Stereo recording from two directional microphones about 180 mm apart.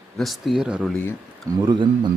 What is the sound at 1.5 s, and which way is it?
Speech, 25° right (ahead or behind).